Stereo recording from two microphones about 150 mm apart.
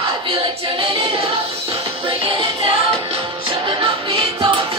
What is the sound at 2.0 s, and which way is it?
Music, 35° right (ahead or behind).